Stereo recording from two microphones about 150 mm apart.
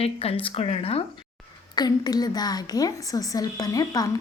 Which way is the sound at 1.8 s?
25° left (ahead or behind).